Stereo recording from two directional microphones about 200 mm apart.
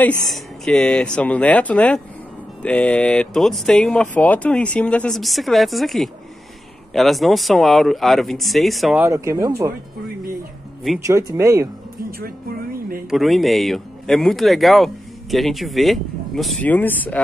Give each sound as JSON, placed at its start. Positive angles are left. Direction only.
{"t": 0.0, "sound": "speech", "side_deg": 5}
{"t": 9.0, "sound": "speech", "side_deg": -15}
{"t": 11.1, "sound": "speech", "side_deg": -15}
{"t": 13.1, "sound": "speech", "side_deg": 0}